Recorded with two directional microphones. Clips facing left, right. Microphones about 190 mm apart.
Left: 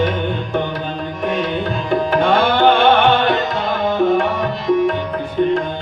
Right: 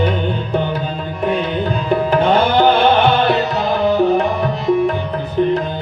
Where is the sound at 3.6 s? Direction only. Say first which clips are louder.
Right 2 dB; 40° right (ahead or behind).